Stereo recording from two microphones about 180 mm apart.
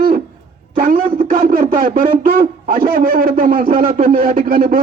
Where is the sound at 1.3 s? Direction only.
45° right (ahead or behind).